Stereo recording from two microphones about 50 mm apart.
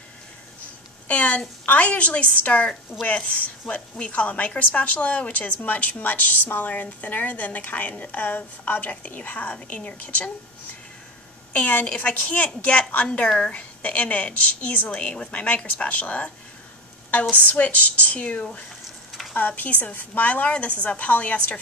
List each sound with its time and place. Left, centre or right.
1.0 s a woman's voice: left
2.9 s speech: left
3.3 s a woman's voice: left
11.5 s a woman's voice: left
15.0 s a woman's voice: left